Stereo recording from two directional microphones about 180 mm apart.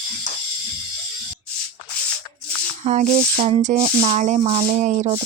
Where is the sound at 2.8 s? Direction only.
40° right (ahead or behind).